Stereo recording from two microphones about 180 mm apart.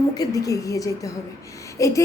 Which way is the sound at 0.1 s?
20° left (ahead or behind).